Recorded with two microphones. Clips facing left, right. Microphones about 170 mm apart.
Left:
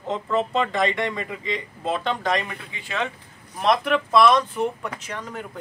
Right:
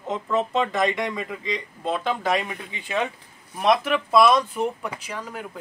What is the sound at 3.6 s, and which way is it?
Speech, 5° right (ahead or behind).